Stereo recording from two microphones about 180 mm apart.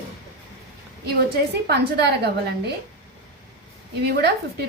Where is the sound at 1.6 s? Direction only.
65° right (ahead or behind).